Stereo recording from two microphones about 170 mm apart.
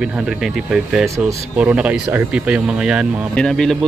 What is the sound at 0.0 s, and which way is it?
Speech, 5° right (ahead or behind).